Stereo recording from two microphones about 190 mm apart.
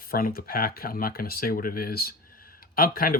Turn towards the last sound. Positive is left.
turn(degrees=50)  # may be behind; listen again after turning